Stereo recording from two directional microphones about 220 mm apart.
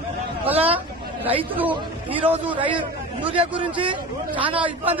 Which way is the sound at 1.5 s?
5° right (ahead or behind).